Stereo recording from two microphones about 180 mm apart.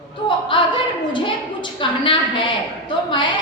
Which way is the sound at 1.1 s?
25° left (ahead or behind).